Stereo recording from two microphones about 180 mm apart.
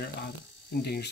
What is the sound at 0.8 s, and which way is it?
Speech, 65° left (ahead or behind).